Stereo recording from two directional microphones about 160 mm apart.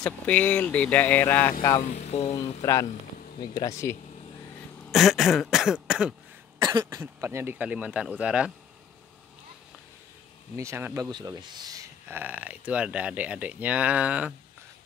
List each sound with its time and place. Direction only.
0.0 s speech: 10° left (ahead or behind)
1.8 s speech: 45° left (ahead or behind)
2.6 s speech: 20° left (ahead or behind)
4.9 s throat clearing: centre (ahead or behind)
6.6 s speech: 20° right (ahead or behind); by 8.5 s 5° right (ahead or behind)
10.5 s speech: 15° right (ahead or behind)